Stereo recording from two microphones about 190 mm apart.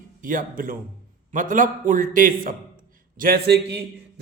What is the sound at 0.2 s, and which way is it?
A man's voice, 45° right (ahead or behind).